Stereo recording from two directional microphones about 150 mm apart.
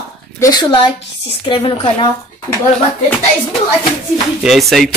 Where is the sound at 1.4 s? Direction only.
35° left (ahead or behind).